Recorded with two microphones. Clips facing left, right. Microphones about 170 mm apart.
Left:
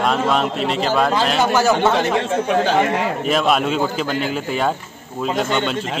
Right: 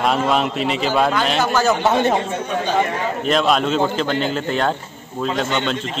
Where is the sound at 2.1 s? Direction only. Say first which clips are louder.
Left 4 dB; 90° left.